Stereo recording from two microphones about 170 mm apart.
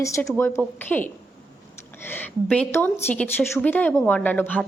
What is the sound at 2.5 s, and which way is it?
A woman's voice, 10° left (ahead or behind).